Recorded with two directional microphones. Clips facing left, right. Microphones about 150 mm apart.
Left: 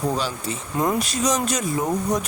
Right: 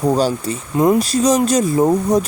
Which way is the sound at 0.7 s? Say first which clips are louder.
Right 9 dB; 25° right (ahead or behind).